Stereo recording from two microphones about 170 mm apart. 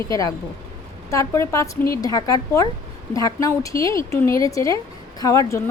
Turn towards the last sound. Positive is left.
turn(degrees=20)  # may be behind; listen again after turning